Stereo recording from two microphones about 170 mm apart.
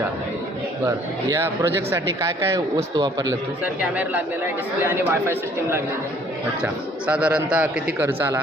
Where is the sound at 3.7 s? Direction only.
10° right (ahead or behind).